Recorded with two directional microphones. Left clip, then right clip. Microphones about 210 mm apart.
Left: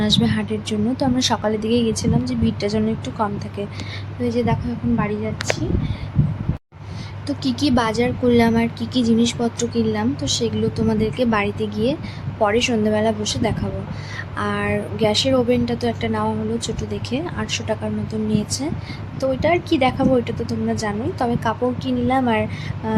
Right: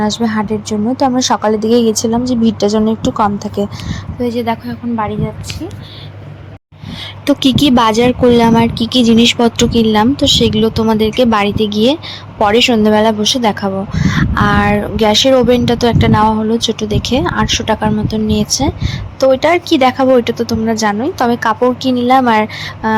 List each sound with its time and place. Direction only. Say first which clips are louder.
0.0 s speech: right 4 dB; 20° right (ahead or behind)
7.3 s speech: right 11 dB; 30° right (ahead or behind)